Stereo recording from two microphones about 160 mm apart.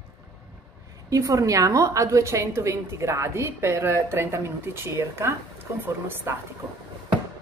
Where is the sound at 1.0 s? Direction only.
20° right (ahead or behind).